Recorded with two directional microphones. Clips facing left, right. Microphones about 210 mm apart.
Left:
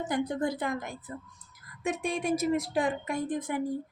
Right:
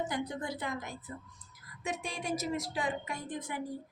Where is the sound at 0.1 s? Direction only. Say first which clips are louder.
Left 7 dB; 50° left (ahead or behind).